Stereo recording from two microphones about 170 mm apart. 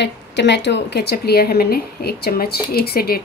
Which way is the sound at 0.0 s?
90° left.